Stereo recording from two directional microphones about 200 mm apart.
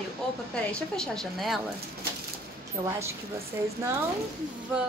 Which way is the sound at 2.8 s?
15° right (ahead or behind).